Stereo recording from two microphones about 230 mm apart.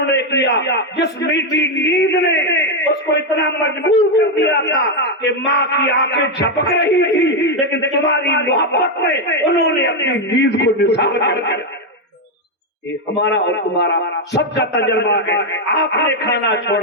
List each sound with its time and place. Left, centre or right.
0.1 s a man's voice: left
13.1 s a man's voice: left